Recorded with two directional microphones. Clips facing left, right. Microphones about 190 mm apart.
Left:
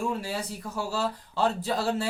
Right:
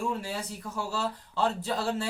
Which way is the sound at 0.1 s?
10° left (ahead or behind).